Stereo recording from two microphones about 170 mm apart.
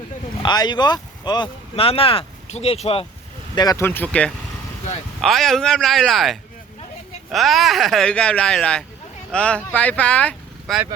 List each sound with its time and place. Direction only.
0.4 s speech: 25° left (ahead or behind)
3.5 s speech: 25° left (ahead or behind); by 10.8 s 10° left (ahead or behind)